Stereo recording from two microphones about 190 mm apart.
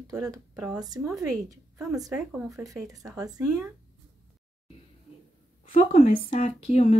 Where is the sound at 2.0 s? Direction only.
5° right (ahead or behind).